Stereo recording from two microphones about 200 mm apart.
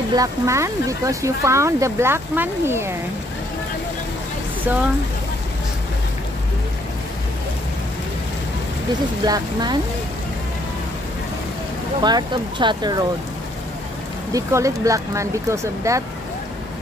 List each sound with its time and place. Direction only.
0.1 s speech: 15° right (ahead or behind)
9.2 s speech: 20° right (ahead or behind)
12.0 s speech: 20° right (ahead or behind)
14.3 s speech: 15° right (ahead or behind)